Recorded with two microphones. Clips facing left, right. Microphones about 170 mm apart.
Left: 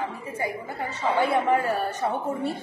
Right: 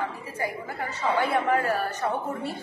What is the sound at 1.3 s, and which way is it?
Speech, 20° left (ahead or behind).